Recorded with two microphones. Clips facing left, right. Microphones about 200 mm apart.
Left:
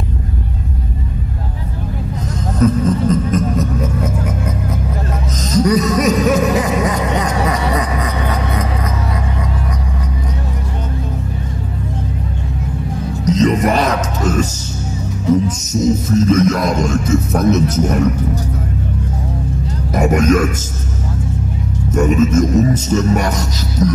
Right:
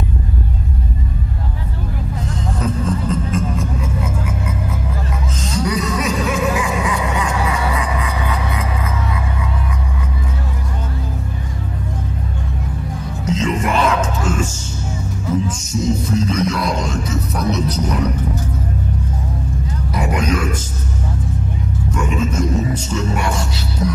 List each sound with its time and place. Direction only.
2.6 s a sound: 40° left (ahead or behind)
7.7 s music: 40° left (ahead or behind)
13.2 s music: 40° left (ahead or behind)
19.9 s speech: 45° left (ahead or behind)
21.9 s music: 45° left (ahead or behind)